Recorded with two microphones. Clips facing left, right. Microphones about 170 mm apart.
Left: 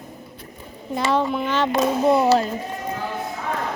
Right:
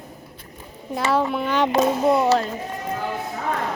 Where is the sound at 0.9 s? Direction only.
5° right (ahead or behind).